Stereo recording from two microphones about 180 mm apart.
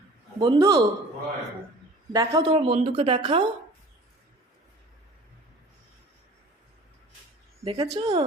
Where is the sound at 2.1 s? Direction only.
20° right (ahead or behind).